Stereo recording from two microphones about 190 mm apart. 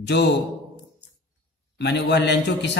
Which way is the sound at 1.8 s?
65° left (ahead or behind).